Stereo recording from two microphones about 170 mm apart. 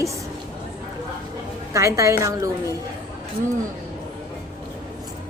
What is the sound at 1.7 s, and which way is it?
Speech, 20° right (ahead or behind).